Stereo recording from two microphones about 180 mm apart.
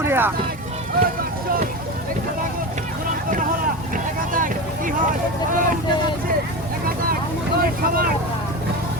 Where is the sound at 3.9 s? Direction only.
50° right (ahead or behind).